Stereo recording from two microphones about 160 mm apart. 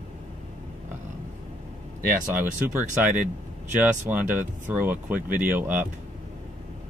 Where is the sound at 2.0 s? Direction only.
15° right (ahead or behind).